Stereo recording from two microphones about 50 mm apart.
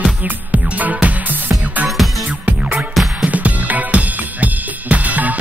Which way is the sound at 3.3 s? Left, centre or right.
Right.